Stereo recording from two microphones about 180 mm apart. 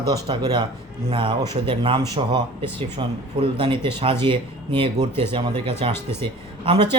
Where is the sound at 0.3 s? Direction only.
25° right (ahead or behind).